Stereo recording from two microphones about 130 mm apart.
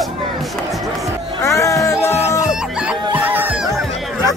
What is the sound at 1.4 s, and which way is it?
Music, 25° left (ahead or behind).